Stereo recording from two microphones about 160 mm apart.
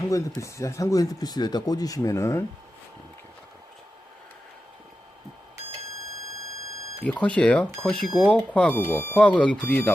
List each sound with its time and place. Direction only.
0.1 s speech: 20° left (ahead or behind)
7.0 s speech: 10° left (ahead or behind)